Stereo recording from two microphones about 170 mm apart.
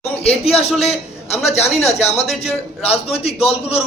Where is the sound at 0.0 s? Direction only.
35° left (ahead or behind).